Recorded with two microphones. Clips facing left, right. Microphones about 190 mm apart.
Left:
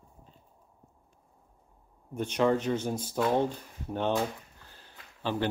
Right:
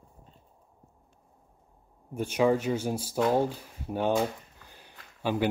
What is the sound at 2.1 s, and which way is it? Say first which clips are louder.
Speech: right 2 dB; 10° right (ahead or behind).